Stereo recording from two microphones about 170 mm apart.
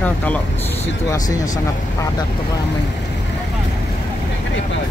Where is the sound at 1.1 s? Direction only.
20° left (ahead or behind).